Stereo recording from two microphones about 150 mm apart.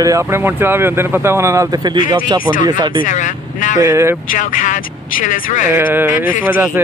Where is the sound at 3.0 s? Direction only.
55° left (ahead or behind).